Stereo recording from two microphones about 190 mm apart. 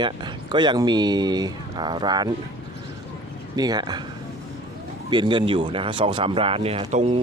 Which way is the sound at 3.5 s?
20° right (ahead or behind).